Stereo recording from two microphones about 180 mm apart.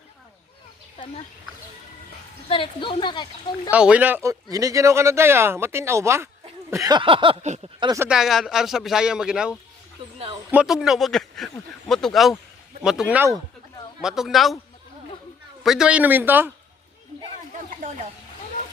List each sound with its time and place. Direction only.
2.5 s speech: 30° left (ahead or behind)
3.7 s speech: 5° right (ahead or behind)
6.7 s a sound: 20° right (ahead or behind); by 7.6 s 35° right (ahead or behind)
7.9 s speech: 5° right (ahead or behind)
15.6 s speech: 5° right (ahead or behind)